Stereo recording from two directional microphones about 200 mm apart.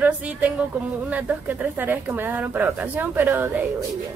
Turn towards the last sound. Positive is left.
turn(degrees=-10)  # may be behind; listen again after turning